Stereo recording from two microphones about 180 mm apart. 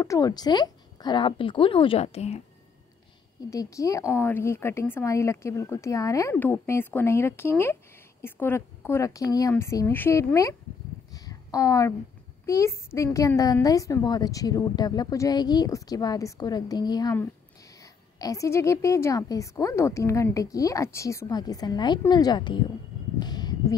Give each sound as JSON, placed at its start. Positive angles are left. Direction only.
{"t": 0.0, "sound": "a woman's voice", "side_deg": 20}
{"t": 3.4, "sound": "a woman's voice", "side_deg": 20}
{"t": 11.1, "sound": "a sound", "side_deg": 20}
{"t": 12.4, "sound": "a woman's voice", "side_deg": 15}
{"t": 18.2, "sound": "a woman's voice", "side_deg": 20}
{"t": 23.1, "sound": "a sound", "side_deg": 20}